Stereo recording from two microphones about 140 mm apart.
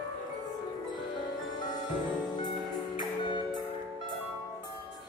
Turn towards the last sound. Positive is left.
turn(degrees=35)  # may be behind; listen again after turning